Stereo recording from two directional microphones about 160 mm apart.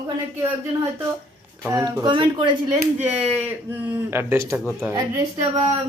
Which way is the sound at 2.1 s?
30° right (ahead or behind).